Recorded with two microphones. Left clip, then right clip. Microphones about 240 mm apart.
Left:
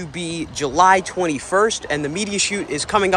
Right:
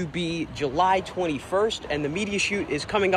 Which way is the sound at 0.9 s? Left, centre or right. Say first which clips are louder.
Left 7 dB; left.